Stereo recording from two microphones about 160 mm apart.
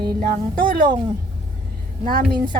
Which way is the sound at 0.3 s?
60° right (ahead or behind).